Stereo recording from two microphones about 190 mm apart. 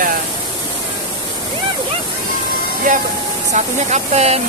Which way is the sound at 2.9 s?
45° right (ahead or behind).